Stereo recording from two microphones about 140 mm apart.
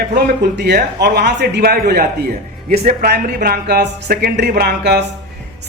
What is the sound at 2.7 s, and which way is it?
Speech, 80° right.